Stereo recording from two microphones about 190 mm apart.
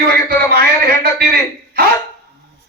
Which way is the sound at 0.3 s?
55° right (ahead or behind).